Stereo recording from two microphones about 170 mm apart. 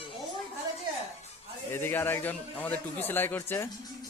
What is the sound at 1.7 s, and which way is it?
A man's voice, 10° left (ahead or behind).